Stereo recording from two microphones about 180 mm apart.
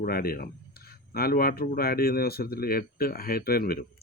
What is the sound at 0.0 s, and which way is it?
Speech, 55° left (ahead or behind).